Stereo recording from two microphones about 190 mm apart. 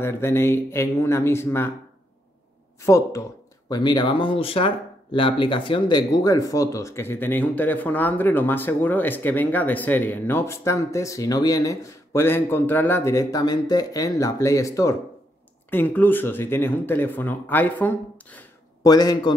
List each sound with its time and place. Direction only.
0.0 s speech: 15° left (ahead or behind)
2.8 s speech: 15° left (ahead or behind)
18.9 s a man's voice: 20° left (ahead or behind)